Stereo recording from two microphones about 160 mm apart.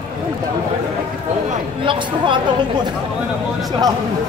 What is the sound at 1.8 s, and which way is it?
Speech, 30° right (ahead or behind).